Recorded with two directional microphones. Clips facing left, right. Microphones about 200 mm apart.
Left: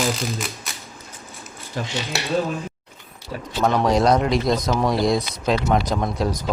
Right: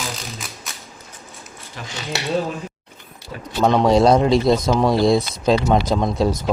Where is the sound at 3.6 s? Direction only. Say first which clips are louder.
Right 4 dB; 25° right (ahead or behind).